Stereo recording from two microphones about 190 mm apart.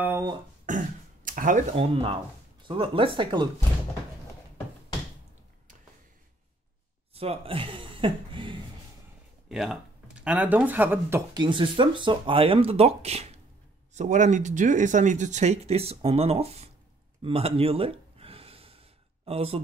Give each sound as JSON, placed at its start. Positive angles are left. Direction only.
{"t": 0.0, "sound": "a sound", "side_deg": -10}
{"t": 0.7, "sound": "throat clearing", "side_deg": -45}
{"t": 1.8, "sound": "speech", "side_deg": -30}
{"t": 7.2, "sound": "speech", "side_deg": -30}
{"t": 9.5, "sound": "speech", "side_deg": -5}
{"t": 17.2, "sound": "gasp", "side_deg": -30}